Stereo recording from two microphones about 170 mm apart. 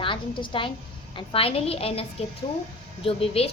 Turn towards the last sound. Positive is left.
turn(degrees=35)  # may be behind; listen again after turning